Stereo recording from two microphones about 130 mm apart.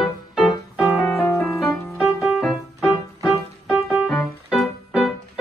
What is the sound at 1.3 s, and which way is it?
Music, 20° left (ahead or behind).